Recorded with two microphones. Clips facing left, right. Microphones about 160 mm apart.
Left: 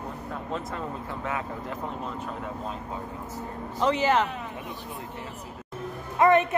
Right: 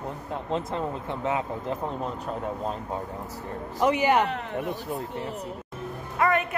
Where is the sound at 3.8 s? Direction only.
15° right (ahead or behind).